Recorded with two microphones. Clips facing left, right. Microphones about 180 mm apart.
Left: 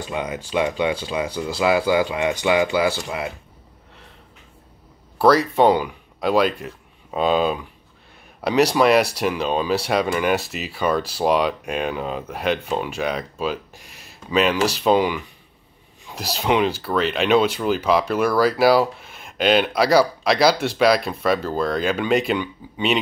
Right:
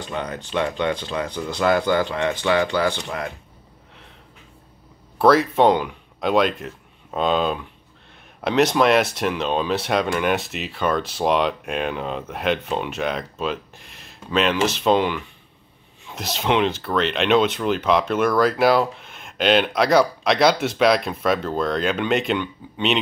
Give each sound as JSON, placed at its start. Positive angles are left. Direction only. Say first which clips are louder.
{"t": 0.0, "sound": "speech", "louder": "left 2 dB", "side_deg": 10}
{"t": 5.2, "sound": "a man's voice", "louder": "even", "side_deg": 0}